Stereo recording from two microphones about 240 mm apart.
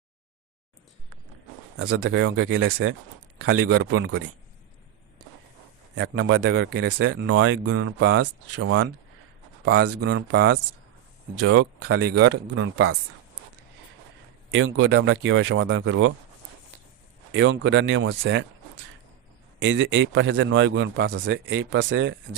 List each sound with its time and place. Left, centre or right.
1.7 s speech: right
6.0 s speech: right
7.8 s speech: right
10.0 s a man's voice: right
12.5 s a man's voice: right
14.5 s speech: right
17.3 s a man's voice: right
19.6 s a man's voice: right